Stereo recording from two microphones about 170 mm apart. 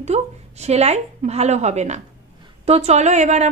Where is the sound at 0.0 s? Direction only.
40° right (ahead or behind).